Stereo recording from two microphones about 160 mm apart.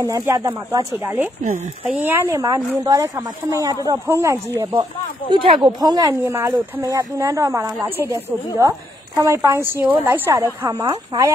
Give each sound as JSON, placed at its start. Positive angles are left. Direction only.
{"t": 0.3, "sound": "speech", "side_deg": -20}
{"t": 0.9, "sound": "a woman's voice", "side_deg": -10}
{"t": 5.3, "sound": "a woman's voice", "side_deg": -30}